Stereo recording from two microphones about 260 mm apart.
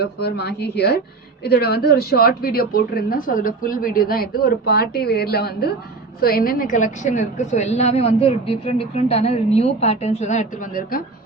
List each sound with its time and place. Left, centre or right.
0.0 s a woman's voice: left